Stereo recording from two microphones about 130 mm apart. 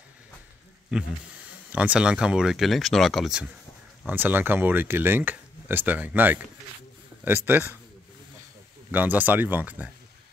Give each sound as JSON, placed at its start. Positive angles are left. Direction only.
{"t": 0.9, "sound": "speech", "side_deg": -5}
{"t": 4.1, "sound": "speech", "side_deg": -15}
{"t": 8.9, "sound": "speech", "side_deg": -15}